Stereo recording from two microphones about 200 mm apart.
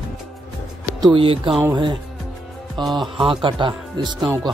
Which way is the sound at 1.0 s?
25° right (ahead or behind).